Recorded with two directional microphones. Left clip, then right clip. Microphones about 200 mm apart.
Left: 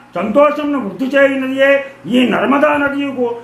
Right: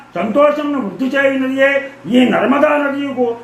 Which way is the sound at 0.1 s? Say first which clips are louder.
Left 1 dB; 15° left (ahead or behind).